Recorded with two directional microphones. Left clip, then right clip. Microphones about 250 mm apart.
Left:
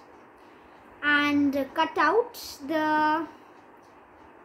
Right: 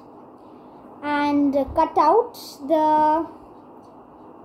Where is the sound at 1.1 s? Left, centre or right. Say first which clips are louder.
Right 4 dB; centre.